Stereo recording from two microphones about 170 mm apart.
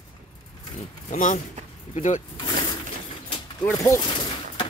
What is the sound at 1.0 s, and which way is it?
Speech, 45° left (ahead or behind).